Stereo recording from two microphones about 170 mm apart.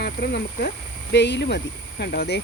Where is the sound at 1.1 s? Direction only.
90° left.